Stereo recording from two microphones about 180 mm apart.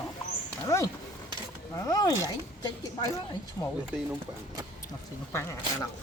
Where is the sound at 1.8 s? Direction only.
20° left (ahead or behind).